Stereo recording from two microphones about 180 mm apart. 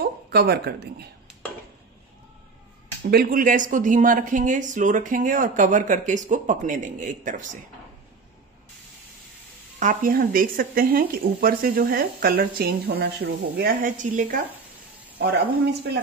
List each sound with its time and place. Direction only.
0.0 s speech: 60° right (ahead or behind)
3.0 s speech: 60° right (ahead or behind); by 7.4 s 45° right (ahead or behind)
9.8 s a woman's voice: 50° right (ahead or behind)